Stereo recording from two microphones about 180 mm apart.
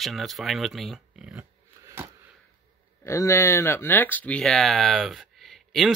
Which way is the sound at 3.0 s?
15° left (ahead or behind).